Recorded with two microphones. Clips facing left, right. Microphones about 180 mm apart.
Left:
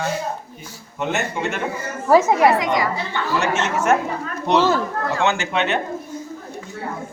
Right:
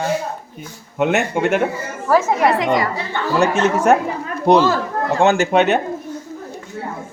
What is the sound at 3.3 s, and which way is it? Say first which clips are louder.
Speech: right 6 dB; 35° right (ahead or behind).